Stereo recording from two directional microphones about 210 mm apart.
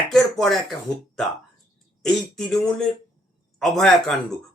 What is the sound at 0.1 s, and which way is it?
Speech, centre (ahead or behind).